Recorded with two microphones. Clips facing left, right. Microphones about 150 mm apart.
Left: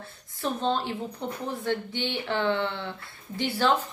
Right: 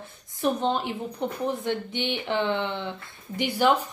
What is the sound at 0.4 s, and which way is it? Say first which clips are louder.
A woman's voice: right 3 dB; 15° right (ahead or behind).